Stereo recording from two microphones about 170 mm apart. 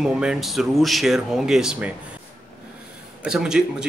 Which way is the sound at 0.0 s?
5° right (ahead or behind).